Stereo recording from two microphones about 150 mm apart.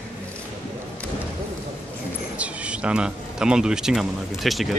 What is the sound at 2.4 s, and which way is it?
Speech, 10° right (ahead or behind).